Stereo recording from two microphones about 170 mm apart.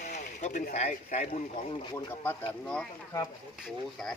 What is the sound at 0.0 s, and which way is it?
Speech, 45° left (ahead or behind).